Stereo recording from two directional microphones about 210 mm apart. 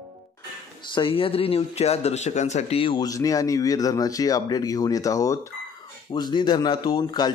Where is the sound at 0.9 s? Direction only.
25° left (ahead or behind).